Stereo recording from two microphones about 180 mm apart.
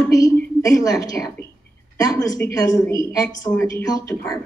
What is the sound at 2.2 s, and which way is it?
Speech, 15° left (ahead or behind).